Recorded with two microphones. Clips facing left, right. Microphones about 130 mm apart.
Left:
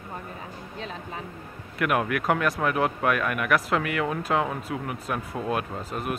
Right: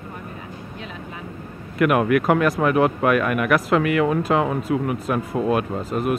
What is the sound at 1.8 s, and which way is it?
Speech, 70° right (ahead or behind).